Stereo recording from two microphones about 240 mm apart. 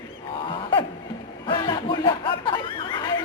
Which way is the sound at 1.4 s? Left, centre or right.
Centre.